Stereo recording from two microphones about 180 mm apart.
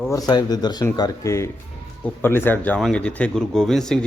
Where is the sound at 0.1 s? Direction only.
20° left (ahead or behind).